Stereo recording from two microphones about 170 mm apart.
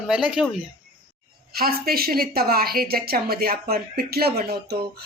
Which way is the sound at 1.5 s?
60° right (ahead or behind).